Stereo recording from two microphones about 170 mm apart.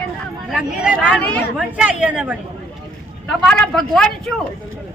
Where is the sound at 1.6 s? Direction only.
5° right (ahead or behind).